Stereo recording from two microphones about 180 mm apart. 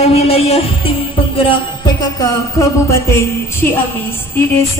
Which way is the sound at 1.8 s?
20° left (ahead or behind).